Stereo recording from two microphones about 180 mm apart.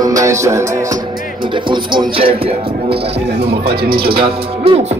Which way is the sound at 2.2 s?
30° right (ahead or behind).